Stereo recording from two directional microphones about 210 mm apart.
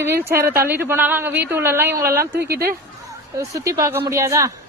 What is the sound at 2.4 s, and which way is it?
Speech, 50° right (ahead or behind).